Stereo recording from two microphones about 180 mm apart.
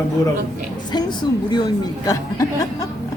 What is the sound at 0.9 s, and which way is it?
A woman's voice, 25° left (ahead or behind).